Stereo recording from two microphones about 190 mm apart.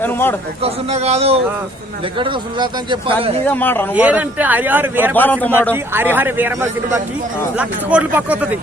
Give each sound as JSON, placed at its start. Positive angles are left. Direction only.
{"t": 0.0, "sound": "a man's voice", "side_deg": 10}
{"t": 0.6, "sound": "speech", "side_deg": -35}
{"t": 3.4, "sound": "a man's voice", "side_deg": 10}
{"t": 3.9, "sound": "a man's voice", "side_deg": -10}
{"t": 5.1, "sound": "a man's voice", "side_deg": 10}
{"t": 5.7, "sound": "a man's voice", "side_deg": -10}